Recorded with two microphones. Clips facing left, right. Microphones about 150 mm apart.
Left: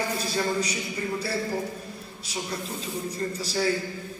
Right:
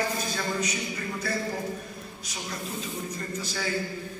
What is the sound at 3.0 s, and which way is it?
Speech, 35° left (ahead or behind).